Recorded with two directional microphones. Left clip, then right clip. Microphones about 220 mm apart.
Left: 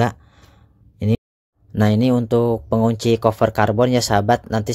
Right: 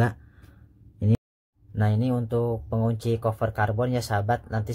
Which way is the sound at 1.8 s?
35° left (ahead or behind).